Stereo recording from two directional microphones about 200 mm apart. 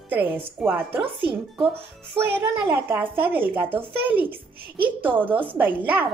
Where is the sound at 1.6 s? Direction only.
25° right (ahead or behind).